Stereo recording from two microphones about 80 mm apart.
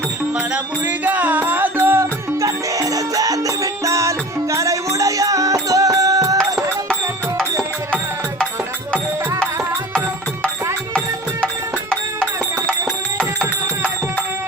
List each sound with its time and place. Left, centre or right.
1.0 s music: right
11.9 s music: centre